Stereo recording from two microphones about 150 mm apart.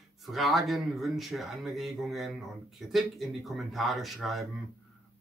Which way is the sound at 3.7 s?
Centre (ahead or behind).